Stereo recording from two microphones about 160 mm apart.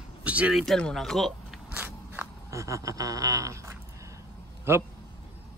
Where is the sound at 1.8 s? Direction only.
15° right (ahead or behind).